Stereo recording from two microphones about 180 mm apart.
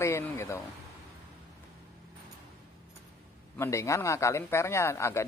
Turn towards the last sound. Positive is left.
turn(degrees=15)  # may be behind; listen again after turning